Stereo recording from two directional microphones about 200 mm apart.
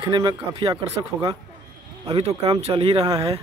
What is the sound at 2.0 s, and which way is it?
Speech, 30° right (ahead or behind).